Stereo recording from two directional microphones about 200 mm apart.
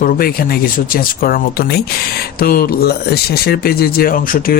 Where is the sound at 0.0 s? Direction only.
45° left (ahead or behind).